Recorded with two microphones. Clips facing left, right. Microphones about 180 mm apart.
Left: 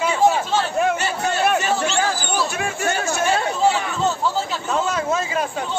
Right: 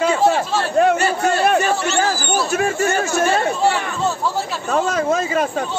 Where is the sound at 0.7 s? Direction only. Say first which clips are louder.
Right 5 dB; 50° right (ahead or behind).